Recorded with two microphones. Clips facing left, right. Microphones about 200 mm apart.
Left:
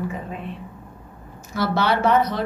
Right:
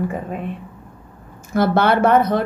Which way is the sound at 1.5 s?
55° right (ahead or behind).